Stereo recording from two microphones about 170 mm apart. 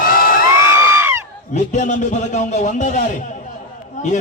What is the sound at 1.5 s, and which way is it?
A man's voice, 45° left (ahead or behind).